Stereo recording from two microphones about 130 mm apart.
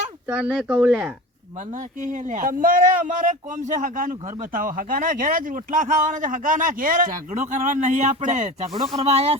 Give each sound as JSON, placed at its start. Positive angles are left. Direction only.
{"t": 0.3, "sound": "speech", "side_deg": -10}
{"t": 2.0, "sound": "speech", "side_deg": -70}
{"t": 9.0, "sound": "speech", "side_deg": -50}